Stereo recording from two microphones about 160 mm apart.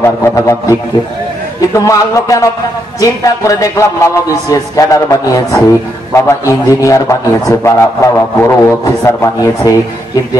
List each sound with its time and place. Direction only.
0.0 s didgeridoo: 15° left (ahead or behind)
1.7 s a man's voice: 20° left (ahead or behind)